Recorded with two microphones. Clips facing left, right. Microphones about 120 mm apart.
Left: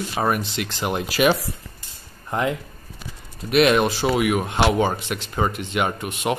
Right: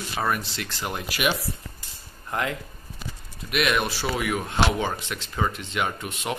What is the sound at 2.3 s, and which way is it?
Speech, 20° left (ahead or behind).